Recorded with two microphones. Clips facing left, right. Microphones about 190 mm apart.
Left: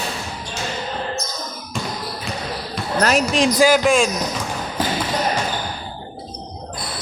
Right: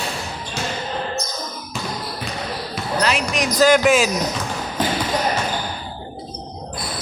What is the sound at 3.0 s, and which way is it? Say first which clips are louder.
Basketball bounce: left 4 dB; 45° left (ahead or behind).